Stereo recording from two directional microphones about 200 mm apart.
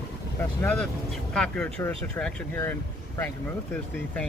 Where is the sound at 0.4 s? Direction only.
10° left (ahead or behind).